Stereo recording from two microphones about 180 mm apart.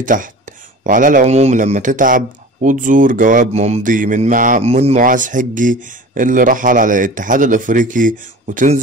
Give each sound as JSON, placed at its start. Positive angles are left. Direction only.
{"t": 0.0, "sound": "a man's voice", "side_deg": -45}